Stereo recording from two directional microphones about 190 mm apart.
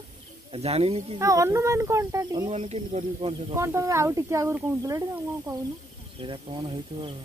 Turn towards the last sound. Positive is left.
turn(degrees=-25)  # may be behind; listen again after turning